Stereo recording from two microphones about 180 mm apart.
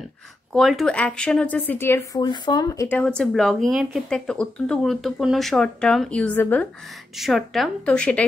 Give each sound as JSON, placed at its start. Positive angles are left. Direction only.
{"t": 0.5, "sound": "speech", "side_deg": 0}
{"t": 2.2, "sound": "speech", "side_deg": 25}
{"t": 3.0, "sound": "speech", "side_deg": 5}